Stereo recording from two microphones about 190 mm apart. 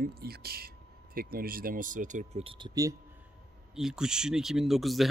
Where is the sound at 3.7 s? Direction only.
5° right (ahead or behind).